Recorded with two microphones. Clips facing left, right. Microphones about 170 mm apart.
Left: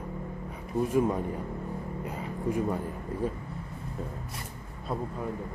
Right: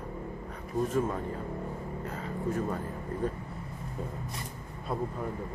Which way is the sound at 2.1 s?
10° left (ahead or behind).